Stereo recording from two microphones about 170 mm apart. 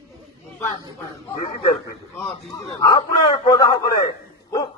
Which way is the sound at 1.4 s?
20° left (ahead or behind).